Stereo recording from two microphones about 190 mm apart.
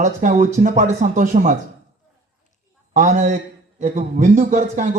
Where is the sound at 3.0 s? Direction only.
40° right (ahead or behind).